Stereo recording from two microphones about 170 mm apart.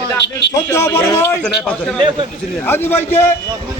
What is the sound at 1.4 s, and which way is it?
Speech, 5° left (ahead or behind).